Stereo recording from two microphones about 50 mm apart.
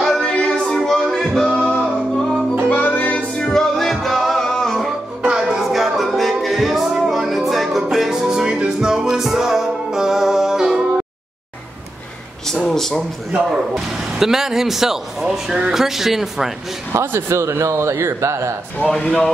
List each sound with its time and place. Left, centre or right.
0.2 s music: left
0.5 s music: centre
1.5 s music: centre
2.7 s music: left
3.3 s music: centre
5.2 s music: centre
5.6 s music: centre
12.6 s a sound: centre
13.3 s speech: centre
16.9 s speech: right
17.3 s a man's voice: right
18.9 s speech: left